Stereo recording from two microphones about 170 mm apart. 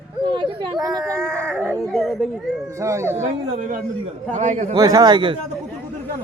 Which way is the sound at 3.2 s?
45° right (ahead or behind).